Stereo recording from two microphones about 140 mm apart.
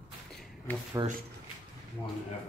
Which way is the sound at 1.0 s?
25° right (ahead or behind).